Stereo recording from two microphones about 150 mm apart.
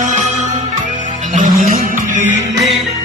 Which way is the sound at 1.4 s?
60° right (ahead or behind).